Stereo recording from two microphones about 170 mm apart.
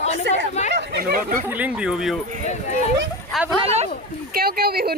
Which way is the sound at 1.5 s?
10° right (ahead or behind).